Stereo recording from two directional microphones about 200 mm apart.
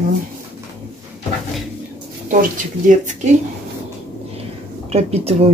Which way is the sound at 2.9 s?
40° right (ahead or behind).